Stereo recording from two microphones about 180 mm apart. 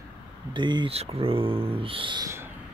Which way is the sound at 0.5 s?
25° right (ahead or behind).